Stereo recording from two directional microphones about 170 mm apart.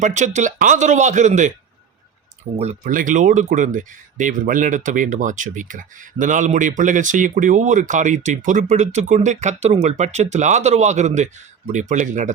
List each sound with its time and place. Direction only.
0.0 s speech: 45° right (ahead or behind)